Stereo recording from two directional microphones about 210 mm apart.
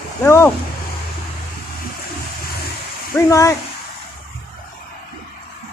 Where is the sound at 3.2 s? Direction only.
15° left (ahead or behind).